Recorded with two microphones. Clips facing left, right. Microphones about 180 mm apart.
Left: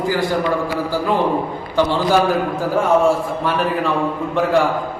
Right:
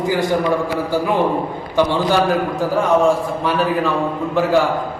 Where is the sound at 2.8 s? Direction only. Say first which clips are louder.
Even; centre (ahead or behind).